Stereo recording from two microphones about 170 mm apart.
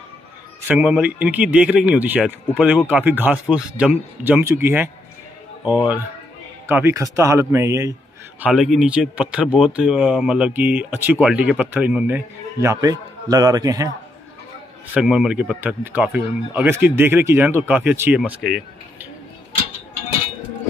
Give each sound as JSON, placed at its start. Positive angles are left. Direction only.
{"t": 0.7, "sound": "speech", "side_deg": -5}
{"t": 6.7, "sound": "speech", "side_deg": -15}
{"t": 8.4, "sound": "speech", "side_deg": 0}
{"t": 12.5, "sound": "a man's voice", "side_deg": -20}
{"t": 15.0, "sound": "speech", "side_deg": -5}